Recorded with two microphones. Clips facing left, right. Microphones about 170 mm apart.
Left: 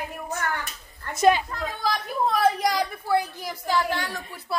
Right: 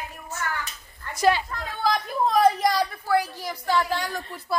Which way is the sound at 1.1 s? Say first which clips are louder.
Left 2 dB; 20° left (ahead or behind).